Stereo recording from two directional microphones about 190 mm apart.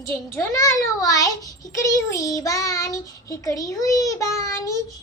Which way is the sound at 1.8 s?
15° left (ahead or behind).